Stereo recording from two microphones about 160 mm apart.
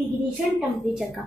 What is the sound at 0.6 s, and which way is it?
Speech, centre (ahead or behind).